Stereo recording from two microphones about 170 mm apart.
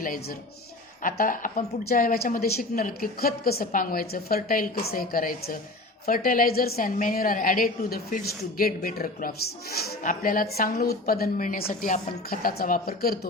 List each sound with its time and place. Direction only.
0.0 s a woman's voice: 55° left (ahead or behind)